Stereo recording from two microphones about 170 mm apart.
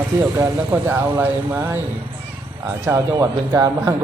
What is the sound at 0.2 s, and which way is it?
Speech, 15° right (ahead or behind).